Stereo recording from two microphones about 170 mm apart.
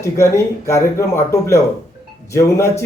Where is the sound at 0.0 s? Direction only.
15° left (ahead or behind).